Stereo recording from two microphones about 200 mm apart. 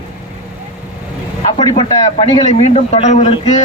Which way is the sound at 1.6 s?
25° left (ahead or behind).